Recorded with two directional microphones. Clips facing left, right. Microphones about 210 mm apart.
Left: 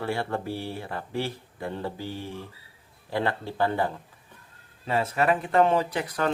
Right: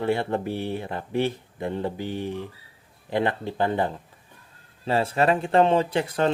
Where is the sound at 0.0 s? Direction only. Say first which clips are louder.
Right 5 dB; 20° right (ahead or behind).